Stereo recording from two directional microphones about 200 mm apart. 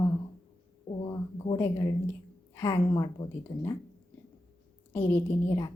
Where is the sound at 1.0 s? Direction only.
20° left (ahead or behind).